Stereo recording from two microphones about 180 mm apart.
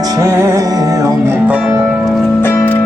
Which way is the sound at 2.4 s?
15° left (ahead or behind).